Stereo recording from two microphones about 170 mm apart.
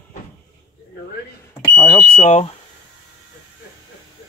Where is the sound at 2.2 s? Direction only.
30° left (ahead or behind).